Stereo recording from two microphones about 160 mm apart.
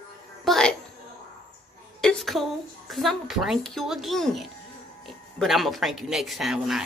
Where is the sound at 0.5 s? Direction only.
5° left (ahead or behind).